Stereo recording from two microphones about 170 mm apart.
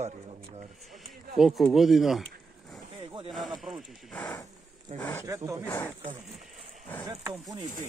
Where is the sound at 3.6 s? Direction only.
Centre (ahead or behind).